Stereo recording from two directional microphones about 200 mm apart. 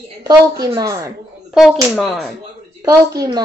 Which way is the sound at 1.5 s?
Centre (ahead or behind).